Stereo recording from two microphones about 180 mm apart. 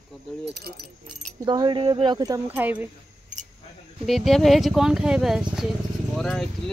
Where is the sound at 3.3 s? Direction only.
45° right (ahead or behind).